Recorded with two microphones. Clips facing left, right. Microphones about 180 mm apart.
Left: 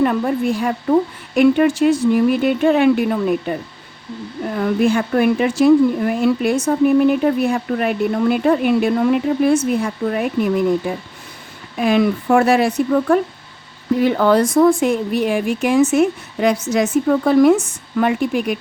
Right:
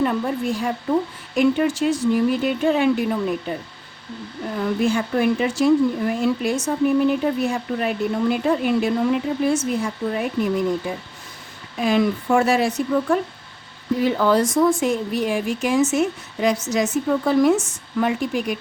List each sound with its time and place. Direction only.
0.0 s speech: 65° left (ahead or behind)
4.5 s speech: 60° left (ahead or behind)